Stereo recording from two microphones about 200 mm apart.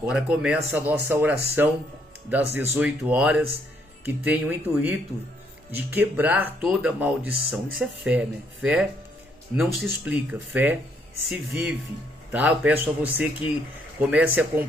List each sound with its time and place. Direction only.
0.0 s speech: 5° right (ahead or behind)